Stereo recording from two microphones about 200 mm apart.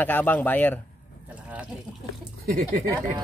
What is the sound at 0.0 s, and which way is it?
Speech, 10° left (ahead or behind).